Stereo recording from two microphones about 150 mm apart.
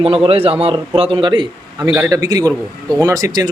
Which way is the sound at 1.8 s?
15° right (ahead or behind).